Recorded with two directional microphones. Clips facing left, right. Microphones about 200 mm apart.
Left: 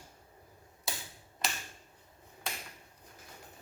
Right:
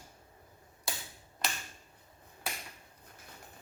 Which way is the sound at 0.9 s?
Centre (ahead or behind).